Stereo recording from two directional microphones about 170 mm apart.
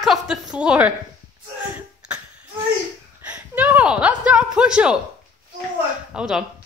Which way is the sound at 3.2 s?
10° right (ahead or behind).